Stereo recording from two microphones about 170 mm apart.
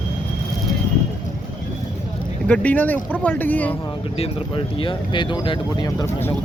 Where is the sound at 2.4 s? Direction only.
10° left (ahead or behind).